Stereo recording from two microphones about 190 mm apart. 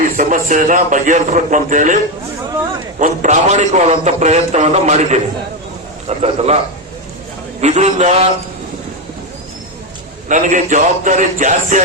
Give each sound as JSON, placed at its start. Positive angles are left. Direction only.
{"t": 0.0, "sound": "a man's voice", "side_deg": -45}
{"t": 3.0, "sound": "a man's voice", "side_deg": -40}
{"t": 7.6, "sound": "a man's voice", "side_deg": -35}
{"t": 10.2, "sound": "a man's voice", "side_deg": -40}